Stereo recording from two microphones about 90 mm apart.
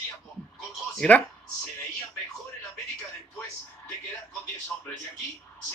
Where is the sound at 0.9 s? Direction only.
15° left (ahead or behind).